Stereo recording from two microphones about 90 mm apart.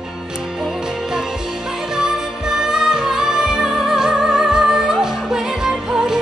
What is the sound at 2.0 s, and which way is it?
Music, 5° right (ahead or behind).